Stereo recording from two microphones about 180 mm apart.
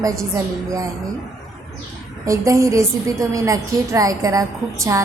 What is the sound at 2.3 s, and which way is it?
A woman's voice, 15° right (ahead or behind).